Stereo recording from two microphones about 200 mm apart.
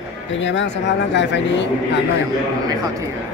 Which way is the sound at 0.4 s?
65° left (ahead or behind).